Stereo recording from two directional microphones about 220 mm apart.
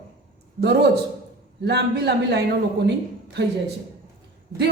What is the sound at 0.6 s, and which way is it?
A man's voice, 45° right (ahead or behind).